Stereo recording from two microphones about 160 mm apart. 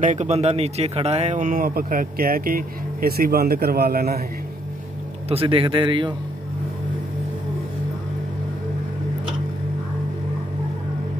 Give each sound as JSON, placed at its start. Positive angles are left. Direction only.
{"t": 0.0, "sound": "speech", "side_deg": -50}
{"t": 5.3, "sound": "speech", "side_deg": -35}